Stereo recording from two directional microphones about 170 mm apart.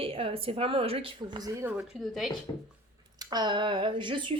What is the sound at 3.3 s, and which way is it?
Speech, 25° right (ahead or behind).